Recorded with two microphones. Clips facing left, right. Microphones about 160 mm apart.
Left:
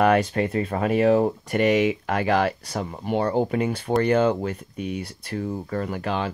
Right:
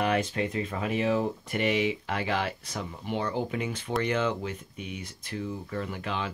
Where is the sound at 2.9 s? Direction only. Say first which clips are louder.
Left 8 dB; 55° left (ahead or behind).